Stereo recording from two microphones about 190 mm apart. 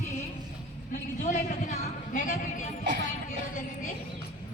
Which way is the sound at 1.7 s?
40° left (ahead or behind).